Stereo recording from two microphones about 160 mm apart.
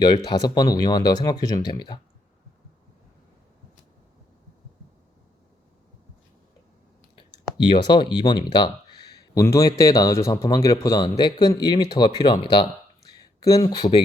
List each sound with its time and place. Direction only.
0.3 s speech: 25° left (ahead or behind)
7.6 s speech: 30° left (ahead or behind)